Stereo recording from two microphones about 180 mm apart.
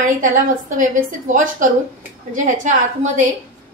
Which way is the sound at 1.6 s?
45° right (ahead or behind).